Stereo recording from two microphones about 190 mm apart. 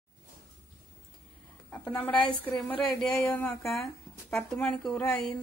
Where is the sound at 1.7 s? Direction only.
10° left (ahead or behind).